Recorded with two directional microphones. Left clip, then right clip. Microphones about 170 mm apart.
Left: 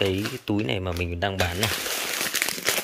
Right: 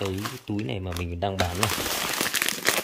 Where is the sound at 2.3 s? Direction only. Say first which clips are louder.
Even; 30° right (ahead or behind).